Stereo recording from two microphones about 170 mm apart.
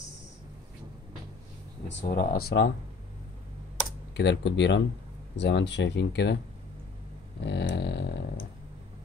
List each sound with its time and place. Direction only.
1.9 s speech: 75° left (ahead or behind)
4.2 s speech: 90° left
7.4 s a sound: 80° left